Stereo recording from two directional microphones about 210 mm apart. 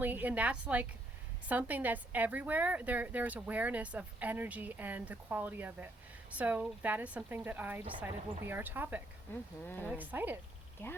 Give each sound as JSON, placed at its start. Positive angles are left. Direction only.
{"t": 0.0, "sound": "speech", "side_deg": -10}
{"t": 9.3, "sound": "speech", "side_deg": 10}
{"t": 9.9, "sound": "speech", "side_deg": -10}